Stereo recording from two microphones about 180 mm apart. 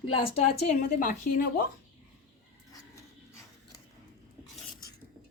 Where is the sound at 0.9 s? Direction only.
45° left (ahead or behind).